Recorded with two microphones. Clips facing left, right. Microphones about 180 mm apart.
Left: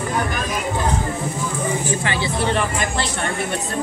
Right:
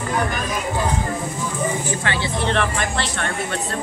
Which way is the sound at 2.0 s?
15° left (ahead or behind).